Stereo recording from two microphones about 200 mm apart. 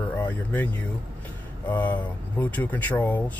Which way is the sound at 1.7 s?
10° left (ahead or behind).